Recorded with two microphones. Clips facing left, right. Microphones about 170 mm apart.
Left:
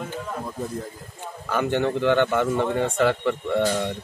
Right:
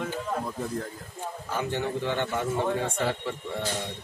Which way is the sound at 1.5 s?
65° left (ahead or behind).